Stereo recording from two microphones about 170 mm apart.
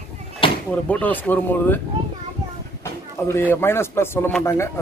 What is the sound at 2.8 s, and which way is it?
Speech, 15° left (ahead or behind).